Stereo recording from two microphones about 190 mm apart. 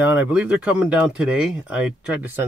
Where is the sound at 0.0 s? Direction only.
10° right (ahead or behind).